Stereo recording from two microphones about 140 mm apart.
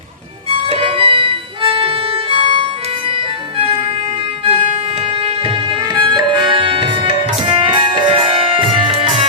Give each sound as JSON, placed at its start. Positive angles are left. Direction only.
{"t": 0.5, "sound": "music", "side_deg": -40}
{"t": 4.4, "sound": "music", "side_deg": -45}